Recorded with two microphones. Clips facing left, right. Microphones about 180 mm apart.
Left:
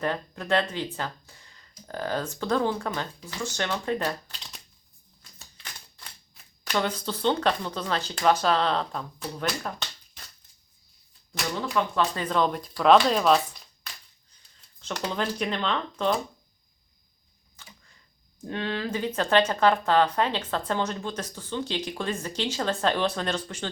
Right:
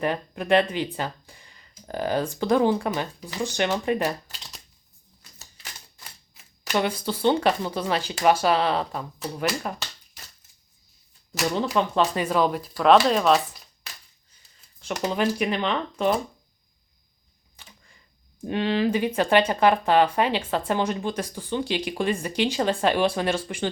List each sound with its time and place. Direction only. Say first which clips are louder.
0.0 s speech: right 3 dB; 15° right (ahead or behind)
6.0 s typewriter: right 1 dB; 5° right (ahead or behind)
6.7 s speech: right 3 dB; 10° right (ahead or behind)
11.8 s speech: right 2 dB; 20° right (ahead or behind)
12.2 s speech: right 3 dB; 5° right (ahead or behind)
14.8 s speech: right 5 dB; 10° right (ahead or behind)
18.3 s speech: right 7 dB; 15° right (ahead or behind)